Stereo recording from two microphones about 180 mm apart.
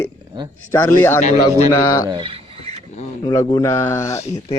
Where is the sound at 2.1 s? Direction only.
30° right (ahead or behind).